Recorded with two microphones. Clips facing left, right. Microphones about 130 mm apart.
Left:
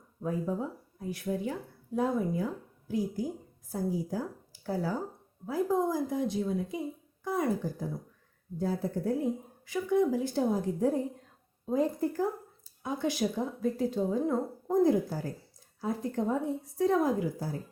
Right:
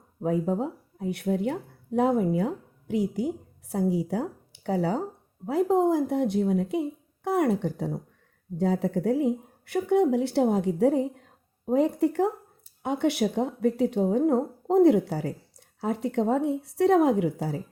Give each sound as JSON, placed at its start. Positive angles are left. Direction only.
{"t": 0.2, "sound": "speech", "side_deg": -70}